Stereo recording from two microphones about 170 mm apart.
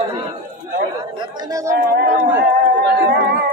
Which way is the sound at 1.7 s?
75° right (ahead or behind).